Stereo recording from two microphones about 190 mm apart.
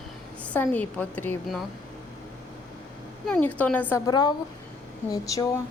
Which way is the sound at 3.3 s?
10° left (ahead or behind).